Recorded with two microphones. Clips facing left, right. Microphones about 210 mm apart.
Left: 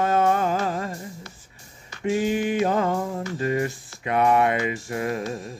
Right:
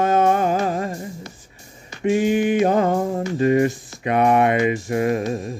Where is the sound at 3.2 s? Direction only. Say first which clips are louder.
Right 7 dB; 20° right (ahead or behind).